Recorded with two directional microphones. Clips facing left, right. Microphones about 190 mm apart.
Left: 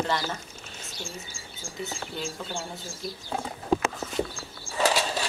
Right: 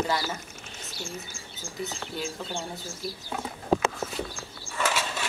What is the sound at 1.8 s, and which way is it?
Speech, centre (ahead or behind).